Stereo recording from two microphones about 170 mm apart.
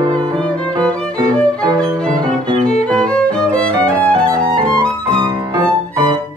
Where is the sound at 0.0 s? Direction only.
25° right (ahead or behind).